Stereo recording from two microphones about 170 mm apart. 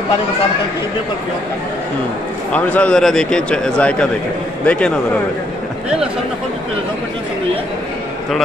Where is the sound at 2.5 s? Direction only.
5° left (ahead or behind).